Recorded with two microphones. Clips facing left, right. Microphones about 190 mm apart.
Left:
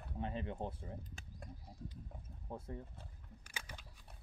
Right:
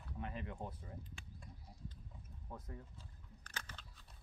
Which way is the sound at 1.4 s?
55° left (ahead or behind).